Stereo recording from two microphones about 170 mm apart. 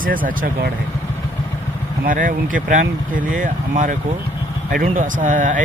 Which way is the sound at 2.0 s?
55° right (ahead or behind).